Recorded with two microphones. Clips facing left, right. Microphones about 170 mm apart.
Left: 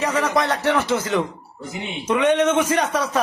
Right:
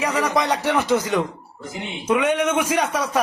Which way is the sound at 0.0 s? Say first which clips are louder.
Left 1 dB; 10° right (ahead or behind).